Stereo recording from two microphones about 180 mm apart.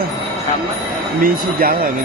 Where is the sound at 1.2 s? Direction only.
50° right (ahead or behind).